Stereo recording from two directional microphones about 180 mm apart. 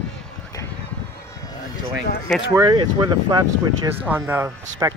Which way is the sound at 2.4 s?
20° right (ahead or behind).